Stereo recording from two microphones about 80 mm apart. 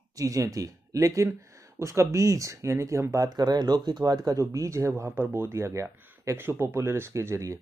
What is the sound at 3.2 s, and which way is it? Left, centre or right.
Speech, right.